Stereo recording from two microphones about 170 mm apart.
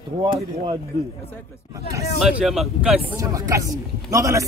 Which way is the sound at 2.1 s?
Centre (ahead or behind).